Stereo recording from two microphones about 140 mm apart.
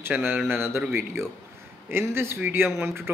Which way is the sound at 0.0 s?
15° right (ahead or behind).